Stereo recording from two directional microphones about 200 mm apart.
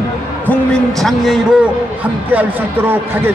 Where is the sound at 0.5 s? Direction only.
Centre (ahead or behind).